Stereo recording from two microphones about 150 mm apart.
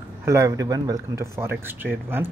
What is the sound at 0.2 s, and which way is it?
Speech, 20° right (ahead or behind).